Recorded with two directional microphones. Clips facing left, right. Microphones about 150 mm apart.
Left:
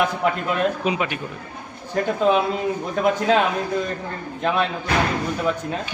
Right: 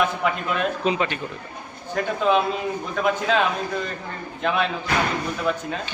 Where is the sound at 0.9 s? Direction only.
10° left (ahead or behind).